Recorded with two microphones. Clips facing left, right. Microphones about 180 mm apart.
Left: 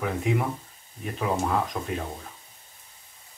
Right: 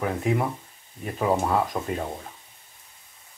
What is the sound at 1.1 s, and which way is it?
Speech, 10° right (ahead or behind).